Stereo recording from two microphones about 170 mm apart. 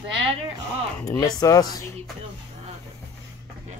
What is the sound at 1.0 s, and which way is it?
Speech, 20° left (ahead or behind).